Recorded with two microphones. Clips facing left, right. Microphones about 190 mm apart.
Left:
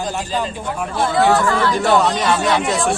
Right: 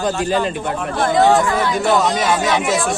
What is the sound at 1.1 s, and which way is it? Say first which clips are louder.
Speech: right 1 dB; 20° right (ahead or behind).